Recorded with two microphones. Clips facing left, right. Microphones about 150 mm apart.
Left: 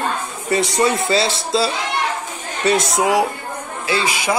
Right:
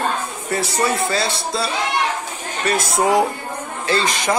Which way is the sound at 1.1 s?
25° left (ahead or behind).